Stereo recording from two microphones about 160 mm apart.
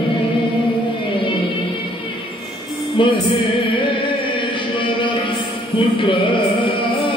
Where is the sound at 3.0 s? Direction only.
30° left (ahead or behind).